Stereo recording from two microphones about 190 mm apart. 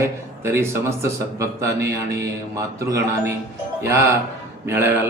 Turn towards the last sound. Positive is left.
turn(degrees=-10)  # may be behind; listen again after turning